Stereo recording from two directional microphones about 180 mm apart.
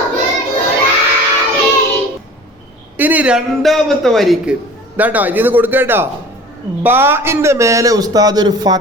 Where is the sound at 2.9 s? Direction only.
10° right (ahead or behind).